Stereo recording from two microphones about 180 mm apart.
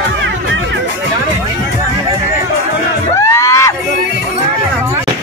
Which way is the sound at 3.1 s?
15° left (ahead or behind).